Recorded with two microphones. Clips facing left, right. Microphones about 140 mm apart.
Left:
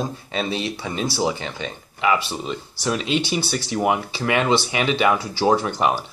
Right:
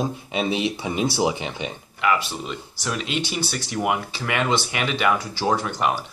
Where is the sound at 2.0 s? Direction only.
20° left (ahead or behind).